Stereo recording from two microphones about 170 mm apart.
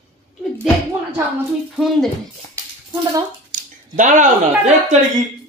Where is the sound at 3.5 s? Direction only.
50° right (ahead or behind).